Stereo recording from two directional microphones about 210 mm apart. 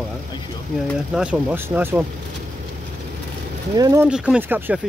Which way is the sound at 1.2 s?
5° right (ahead or behind).